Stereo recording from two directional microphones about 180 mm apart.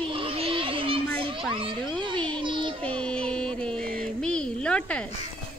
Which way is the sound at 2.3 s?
25° right (ahead or behind).